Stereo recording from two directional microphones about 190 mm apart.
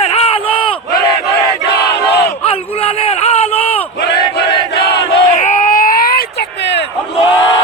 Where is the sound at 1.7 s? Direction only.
60° left (ahead or behind).